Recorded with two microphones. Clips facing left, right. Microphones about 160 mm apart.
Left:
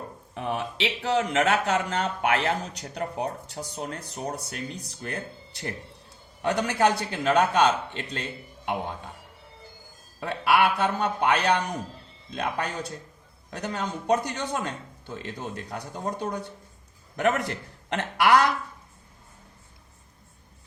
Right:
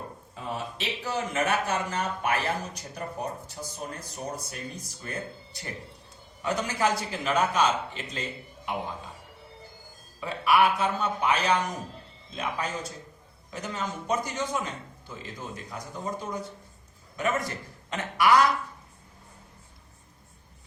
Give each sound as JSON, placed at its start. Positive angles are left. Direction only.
{"t": 0.3, "sound": "a man's voice", "side_deg": 70}
{"t": 10.2, "sound": "a man's voice", "side_deg": 70}